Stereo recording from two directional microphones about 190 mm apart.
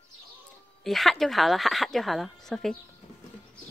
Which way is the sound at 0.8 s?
Centre (ahead or behind).